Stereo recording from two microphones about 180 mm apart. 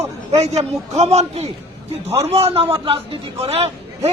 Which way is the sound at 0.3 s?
35° right (ahead or behind).